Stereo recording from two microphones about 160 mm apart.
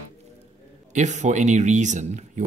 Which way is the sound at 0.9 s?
50° right (ahead or behind).